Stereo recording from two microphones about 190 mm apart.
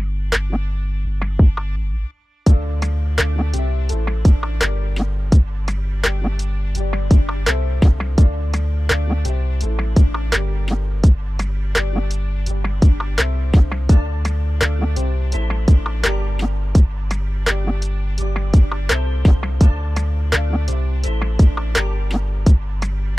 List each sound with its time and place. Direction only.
0.3 s music: centre (ahead or behind)